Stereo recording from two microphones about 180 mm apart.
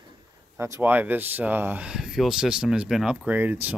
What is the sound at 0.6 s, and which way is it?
Speech, 15° right (ahead or behind).